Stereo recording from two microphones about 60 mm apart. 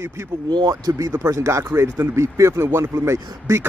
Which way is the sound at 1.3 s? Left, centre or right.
Right.